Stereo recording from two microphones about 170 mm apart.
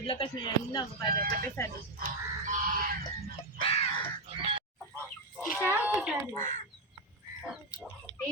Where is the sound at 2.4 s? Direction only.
50° right (ahead or behind).